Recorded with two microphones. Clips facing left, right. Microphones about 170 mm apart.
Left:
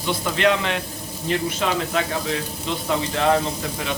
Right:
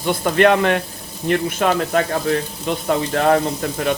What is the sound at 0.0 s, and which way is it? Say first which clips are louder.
Speech: right 6 dB; 50° right (ahead or behind).